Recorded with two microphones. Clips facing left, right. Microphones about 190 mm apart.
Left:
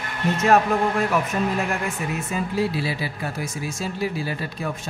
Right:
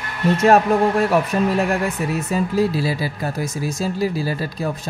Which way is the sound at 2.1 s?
40° right (ahead or behind).